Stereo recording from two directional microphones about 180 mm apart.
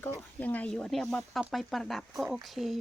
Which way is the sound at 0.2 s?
10° left (ahead or behind).